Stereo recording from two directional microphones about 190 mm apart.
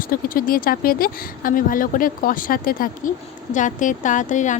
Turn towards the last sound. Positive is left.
turn(degrees=40)  # may be behind; listen again after turning